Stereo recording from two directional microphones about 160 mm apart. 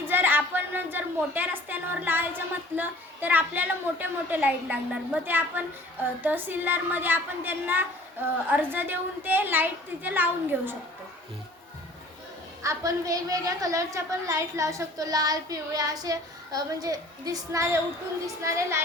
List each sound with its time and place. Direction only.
0.0 s a sound: 10° right (ahead or behind)
2.7 s a woman's voice: 10° right (ahead or behind)
12.6 s a woman's voice: 20° right (ahead or behind)